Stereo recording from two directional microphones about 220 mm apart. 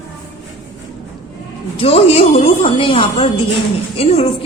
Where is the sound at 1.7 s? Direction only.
25° left (ahead or behind).